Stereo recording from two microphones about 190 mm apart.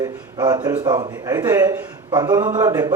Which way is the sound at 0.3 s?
20° right (ahead or behind).